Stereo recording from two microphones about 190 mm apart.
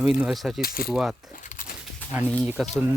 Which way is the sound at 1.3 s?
45° left (ahead or behind).